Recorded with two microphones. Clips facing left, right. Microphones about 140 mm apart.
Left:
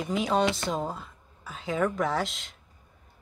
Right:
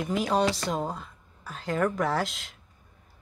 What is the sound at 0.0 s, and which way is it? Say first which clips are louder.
Speech: even; centre (ahead or behind).